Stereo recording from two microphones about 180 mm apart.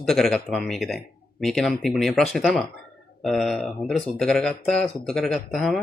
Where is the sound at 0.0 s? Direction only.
Centre (ahead or behind).